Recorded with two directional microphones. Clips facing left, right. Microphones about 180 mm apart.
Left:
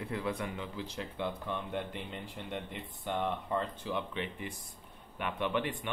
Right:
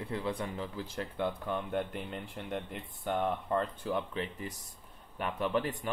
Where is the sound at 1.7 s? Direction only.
45° right (ahead or behind).